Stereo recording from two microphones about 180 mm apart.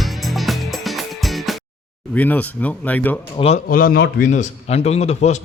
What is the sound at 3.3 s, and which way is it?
Speech, 35° left (ahead or behind).